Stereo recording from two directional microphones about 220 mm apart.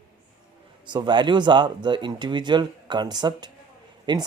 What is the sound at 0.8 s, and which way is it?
Speech, 20° right (ahead or behind).